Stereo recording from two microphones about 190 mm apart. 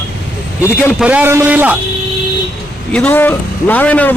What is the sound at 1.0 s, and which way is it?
Speech, 5° right (ahead or behind).